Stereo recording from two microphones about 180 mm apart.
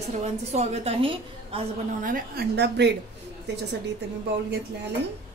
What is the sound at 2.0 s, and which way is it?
Speech, 50° right (ahead or behind).